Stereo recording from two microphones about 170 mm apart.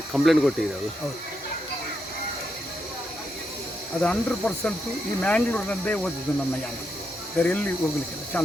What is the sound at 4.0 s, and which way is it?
Speech, 5° left (ahead or behind).